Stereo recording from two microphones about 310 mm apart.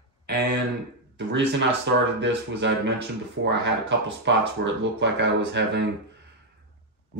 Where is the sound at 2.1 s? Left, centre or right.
Right.